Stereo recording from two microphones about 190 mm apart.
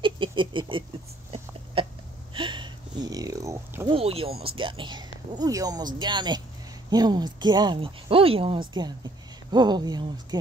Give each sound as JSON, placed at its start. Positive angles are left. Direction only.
{"t": 0.0, "sound": "rodents", "side_deg": -25}
{"t": 1.8, "sound": "hiccup", "side_deg": -30}
{"t": 2.3, "sound": "a sound", "side_deg": -25}
{"t": 3.9, "sound": "speech", "side_deg": -30}